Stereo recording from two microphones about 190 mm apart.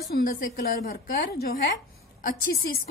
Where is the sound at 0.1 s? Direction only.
50° left (ahead or behind).